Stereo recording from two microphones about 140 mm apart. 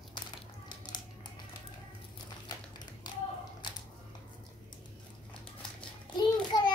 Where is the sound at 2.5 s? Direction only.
30° left (ahead or behind).